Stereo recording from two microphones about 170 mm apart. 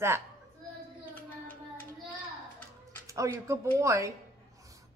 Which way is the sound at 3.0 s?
20° right (ahead or behind).